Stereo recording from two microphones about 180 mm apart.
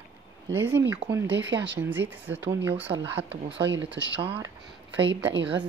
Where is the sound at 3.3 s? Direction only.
90° right.